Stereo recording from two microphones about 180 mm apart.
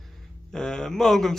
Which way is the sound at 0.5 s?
5° left (ahead or behind).